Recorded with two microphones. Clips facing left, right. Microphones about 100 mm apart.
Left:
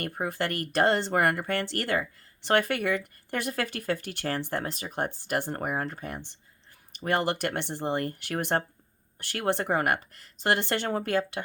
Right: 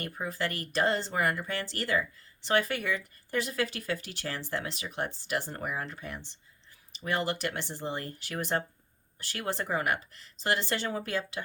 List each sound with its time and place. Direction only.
0.0 s speech: 55° left (ahead or behind)